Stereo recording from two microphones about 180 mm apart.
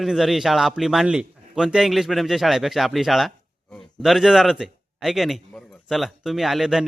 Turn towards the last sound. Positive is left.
turn(degrees=0)  # may be behind; listen again after turning